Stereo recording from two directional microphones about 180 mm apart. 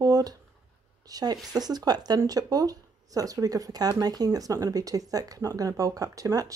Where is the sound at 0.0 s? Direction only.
20° right (ahead or behind).